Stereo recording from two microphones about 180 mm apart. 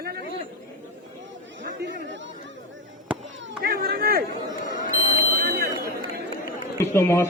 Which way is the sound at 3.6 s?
55° right (ahead or behind).